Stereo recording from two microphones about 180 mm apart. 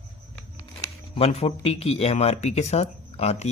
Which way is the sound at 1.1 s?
35° left (ahead or behind).